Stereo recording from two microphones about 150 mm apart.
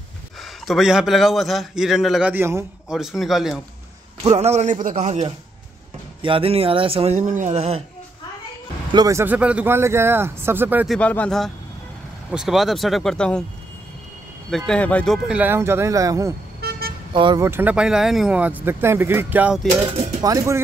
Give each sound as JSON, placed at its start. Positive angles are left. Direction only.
{"t": 0.4, "sound": "a man's voice", "side_deg": 0}
{"t": 2.3, "sound": "a man's voice", "side_deg": -15}
{"t": 2.9, "sound": "a man's voice", "side_deg": 0}
{"t": 4.2, "sound": "speech", "side_deg": -45}
{"t": 6.2, "sound": "speech", "side_deg": -40}
{"t": 7.2, "sound": "speech", "side_deg": -55}
{"t": 8.9, "sound": "a man's voice", "side_deg": -20}
{"t": 10.9, "sound": "a man's voice", "side_deg": 10}
{"t": 14.7, "sound": "speech", "side_deg": 10}
{"t": 15.2, "sound": "a man's voice", "side_deg": -10}
{"t": 16.6, "sound": "vehicle", "side_deg": -90}
{"t": 17.1, "sound": "speech", "side_deg": -30}
{"t": 17.4, "sound": "a man's voice", "side_deg": -15}
{"t": 20.2, "sound": "speech", "side_deg": -25}